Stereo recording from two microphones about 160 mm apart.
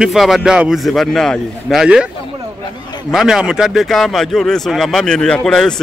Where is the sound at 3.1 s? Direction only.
5° right (ahead or behind).